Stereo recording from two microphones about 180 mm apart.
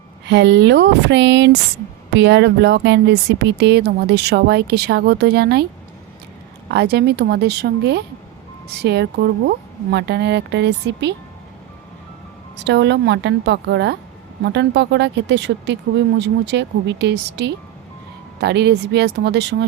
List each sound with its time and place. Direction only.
0.3 s speech: 75° right (ahead or behind)
6.7 s speech: 70° right (ahead or behind)
12.6 s speech: 75° right (ahead or behind)